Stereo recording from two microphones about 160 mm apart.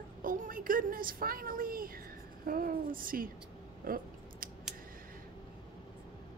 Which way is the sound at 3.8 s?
65° right (ahead or behind).